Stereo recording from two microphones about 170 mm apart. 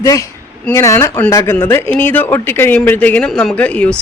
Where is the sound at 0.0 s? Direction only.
20° left (ahead or behind).